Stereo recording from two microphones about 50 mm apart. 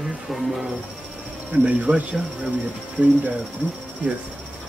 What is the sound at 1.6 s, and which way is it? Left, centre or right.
Cricket, right.